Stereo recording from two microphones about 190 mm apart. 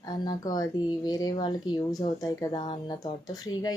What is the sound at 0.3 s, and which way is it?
Speech, 20° left (ahead or behind).